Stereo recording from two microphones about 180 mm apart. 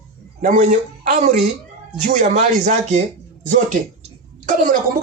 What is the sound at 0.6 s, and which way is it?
Speech, 50° right (ahead or behind).